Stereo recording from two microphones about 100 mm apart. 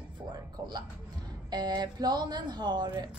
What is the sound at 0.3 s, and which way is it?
Music, 45° right (ahead or behind).